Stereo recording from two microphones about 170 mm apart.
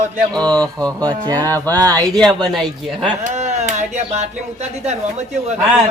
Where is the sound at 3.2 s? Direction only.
40° right (ahead or behind).